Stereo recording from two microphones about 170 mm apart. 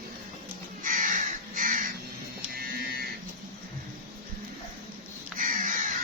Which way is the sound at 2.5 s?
65° right (ahead or behind).